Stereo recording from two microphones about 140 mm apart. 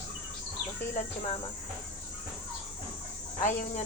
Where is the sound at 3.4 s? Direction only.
60° left (ahead or behind).